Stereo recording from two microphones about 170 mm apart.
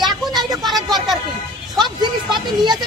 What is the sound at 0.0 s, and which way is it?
Vehicle, centre (ahead or behind).